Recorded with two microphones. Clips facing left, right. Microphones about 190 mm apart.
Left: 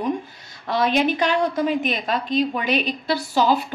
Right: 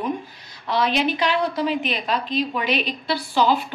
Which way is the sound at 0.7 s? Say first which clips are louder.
Left 2 dB; 45° left (ahead or behind).